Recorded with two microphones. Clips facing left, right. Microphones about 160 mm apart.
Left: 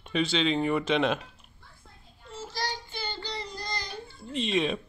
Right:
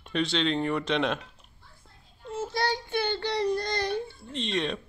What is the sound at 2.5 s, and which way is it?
Child singing, 60° right (ahead or behind).